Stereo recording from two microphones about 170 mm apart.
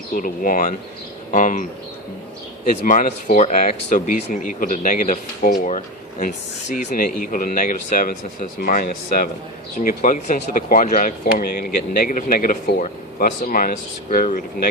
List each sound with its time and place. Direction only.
0.1 s speech: 55° left (ahead or behind)
2.6 s speech: 50° left (ahead or behind)